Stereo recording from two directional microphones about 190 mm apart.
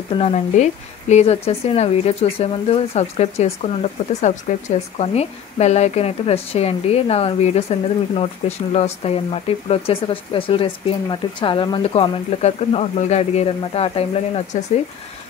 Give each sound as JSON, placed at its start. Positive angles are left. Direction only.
{"t": 0.1, "sound": "speech", "side_deg": 35}